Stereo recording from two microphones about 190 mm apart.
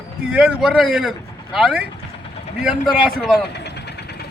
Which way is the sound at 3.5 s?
60° left (ahead or behind).